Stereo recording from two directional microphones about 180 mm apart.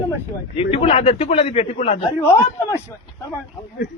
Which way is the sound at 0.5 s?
30° left (ahead or behind).